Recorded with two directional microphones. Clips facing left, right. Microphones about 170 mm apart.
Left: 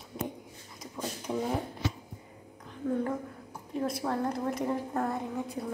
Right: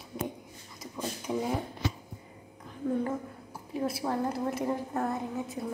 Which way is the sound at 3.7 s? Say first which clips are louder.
Even; 5° right (ahead or behind).